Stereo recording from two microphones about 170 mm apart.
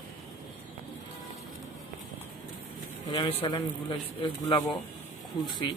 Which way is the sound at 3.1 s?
30° left (ahead or behind).